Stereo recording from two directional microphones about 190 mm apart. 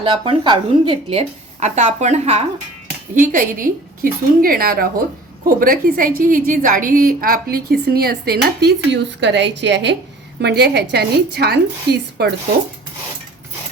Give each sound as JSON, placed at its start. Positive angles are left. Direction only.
{"t": 0.0, "sound": "a woman's voice", "side_deg": -25}
{"t": 3.2, "sound": "a woman's voice", "side_deg": -45}